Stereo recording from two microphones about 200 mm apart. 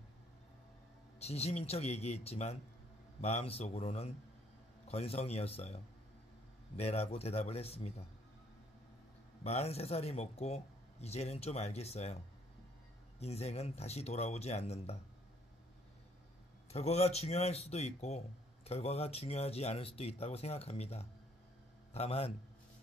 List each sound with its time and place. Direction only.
1.2 s speech: 30° left (ahead or behind)
6.8 s speech: 30° left (ahead or behind)
9.4 s speech: 30° left (ahead or behind)
13.2 s speech: 30° left (ahead or behind)
16.7 s speech: 30° left (ahead or behind)